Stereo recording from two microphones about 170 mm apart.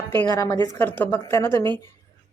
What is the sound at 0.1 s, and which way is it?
A woman's voice, 15° left (ahead or behind).